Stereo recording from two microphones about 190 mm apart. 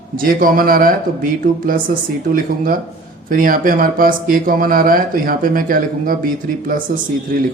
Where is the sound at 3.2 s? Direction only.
45° right (ahead or behind).